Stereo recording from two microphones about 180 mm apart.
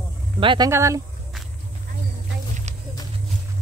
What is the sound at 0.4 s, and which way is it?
Speech, 30° right (ahead or behind).